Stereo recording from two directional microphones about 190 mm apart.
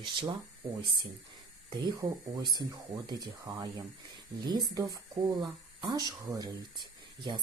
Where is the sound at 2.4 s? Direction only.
20° right (ahead or behind).